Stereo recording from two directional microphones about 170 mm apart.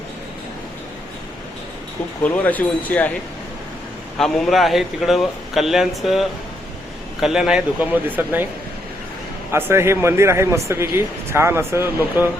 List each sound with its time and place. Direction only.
2.2 s speech: 10° left (ahead or behind)
4.2 s a man's voice: centre (ahead or behind)
9.5 s speech: 15° right (ahead or behind)